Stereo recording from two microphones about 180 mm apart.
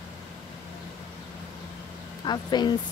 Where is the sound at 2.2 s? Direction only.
25° left (ahead or behind).